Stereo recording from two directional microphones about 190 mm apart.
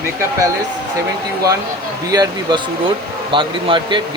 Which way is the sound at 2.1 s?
20° right (ahead or behind).